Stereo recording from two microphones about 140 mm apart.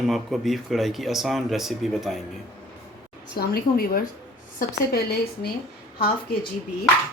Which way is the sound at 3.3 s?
90° left.